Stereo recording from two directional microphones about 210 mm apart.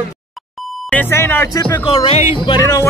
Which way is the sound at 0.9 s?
10° left (ahead or behind).